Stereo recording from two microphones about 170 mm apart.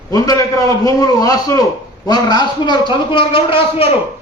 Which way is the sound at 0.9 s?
20° left (ahead or behind).